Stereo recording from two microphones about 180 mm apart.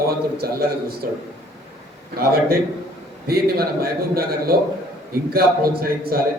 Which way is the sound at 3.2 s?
55° right (ahead or behind).